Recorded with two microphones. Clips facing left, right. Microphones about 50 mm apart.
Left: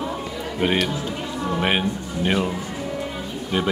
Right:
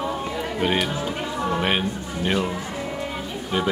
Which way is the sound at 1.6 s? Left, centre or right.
Centre.